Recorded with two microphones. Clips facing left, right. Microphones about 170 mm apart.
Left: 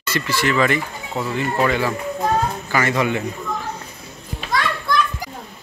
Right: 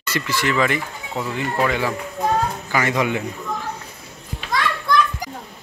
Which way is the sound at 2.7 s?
15° right (ahead or behind).